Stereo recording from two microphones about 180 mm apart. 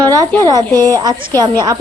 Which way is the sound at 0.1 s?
20° right (ahead or behind).